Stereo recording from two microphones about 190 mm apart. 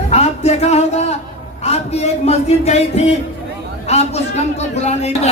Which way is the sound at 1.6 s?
35° left (ahead or behind).